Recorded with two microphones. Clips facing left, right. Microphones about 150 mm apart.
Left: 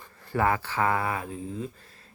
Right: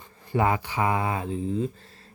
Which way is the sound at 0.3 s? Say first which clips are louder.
Right 1 dB; 20° right (ahead or behind).